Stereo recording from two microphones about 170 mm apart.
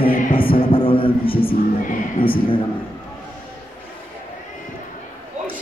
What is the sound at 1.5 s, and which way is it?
Music, 55° left (ahead or behind).